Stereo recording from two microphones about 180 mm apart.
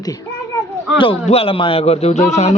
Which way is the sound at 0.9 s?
30° left (ahead or behind).